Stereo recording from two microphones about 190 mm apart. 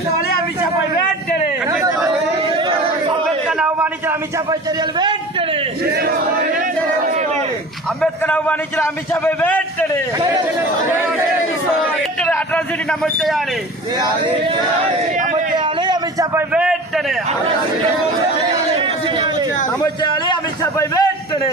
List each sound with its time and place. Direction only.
8.0 s a man's voice: 10° left (ahead or behind)
10.2 s a man's voice: 20° right (ahead or behind)
12.2 s a man's voice: 5° left (ahead or behind)
15.5 s a sound: 20° right (ahead or behind)
16.5 s a man's voice: 5° right (ahead or behind)
19.8 s a sound: 25° left (ahead or behind)